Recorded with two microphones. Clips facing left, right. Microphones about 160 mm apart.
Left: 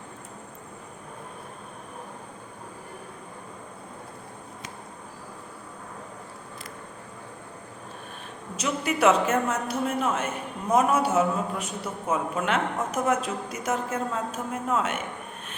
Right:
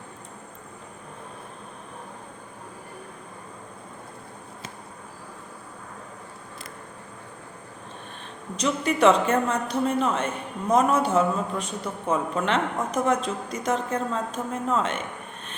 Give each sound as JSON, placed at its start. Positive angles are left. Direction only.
{"t": 8.5, "sound": "a man's voice", "side_deg": 5}